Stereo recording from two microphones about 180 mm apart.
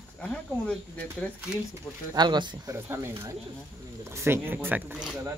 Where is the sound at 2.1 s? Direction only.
25° right (ahead or behind); by 5.2 s 5° right (ahead or behind).